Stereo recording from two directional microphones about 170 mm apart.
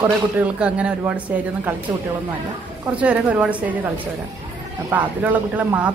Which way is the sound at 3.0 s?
10° right (ahead or behind).